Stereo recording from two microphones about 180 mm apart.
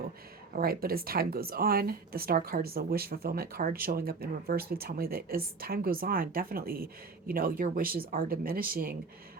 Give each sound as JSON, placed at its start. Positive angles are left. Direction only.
{"t": 0.5, "sound": "speech", "side_deg": -55}